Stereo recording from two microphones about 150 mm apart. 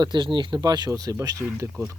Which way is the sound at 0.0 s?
30° right (ahead or behind).